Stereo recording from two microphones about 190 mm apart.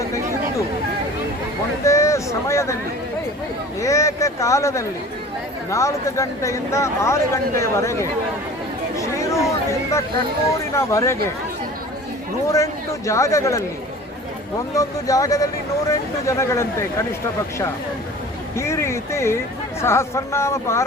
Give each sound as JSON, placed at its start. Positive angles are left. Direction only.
{"t": 1.8, "sound": "a sound", "side_deg": 15}
{"t": 3.8, "sound": "speech", "side_deg": 15}
{"t": 9.0, "sound": "chatter", "side_deg": 15}
{"t": 10.8, "sound": "speech", "side_deg": 15}
{"t": 12.5, "sound": "speech", "side_deg": 15}
{"t": 14.8, "sound": "speech", "side_deg": 15}
{"t": 18.5, "sound": "speech", "side_deg": 15}